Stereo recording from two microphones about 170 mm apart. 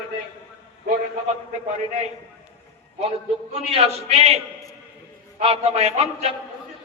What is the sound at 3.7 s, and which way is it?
A man's voice, 35° right (ahead or behind).